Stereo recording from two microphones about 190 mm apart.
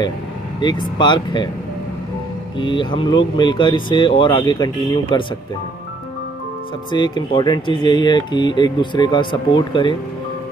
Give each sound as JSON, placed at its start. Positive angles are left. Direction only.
{"t": 0.6, "sound": "speech", "side_deg": 25}
{"t": 2.6, "sound": "speech", "side_deg": 25}
{"t": 6.9, "sound": "speech", "side_deg": 25}